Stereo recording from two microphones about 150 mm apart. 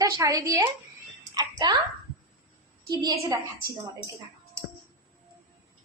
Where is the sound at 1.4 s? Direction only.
25° right (ahead or behind).